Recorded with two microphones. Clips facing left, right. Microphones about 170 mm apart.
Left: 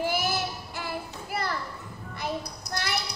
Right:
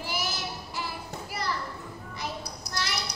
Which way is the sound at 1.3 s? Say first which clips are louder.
Left 2 dB; 55° left (ahead or behind).